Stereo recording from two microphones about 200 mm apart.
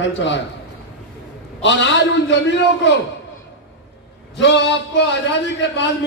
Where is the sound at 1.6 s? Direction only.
60° left (ahead or behind).